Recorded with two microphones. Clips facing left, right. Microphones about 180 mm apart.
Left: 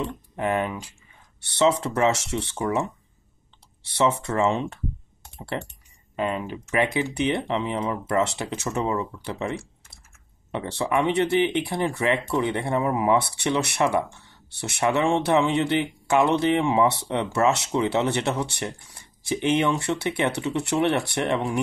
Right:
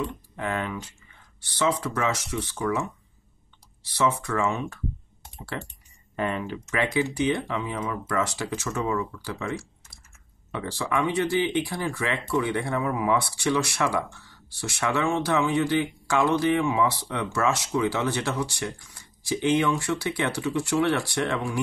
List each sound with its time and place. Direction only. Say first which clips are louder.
0.0 s speech: left 3 dB; 20° left (ahead or behind)
4.2 s speech: left 3 dB; 30° left (ahead or behind)
6.3 s speech: left 3 dB; 20° left (ahead or behind)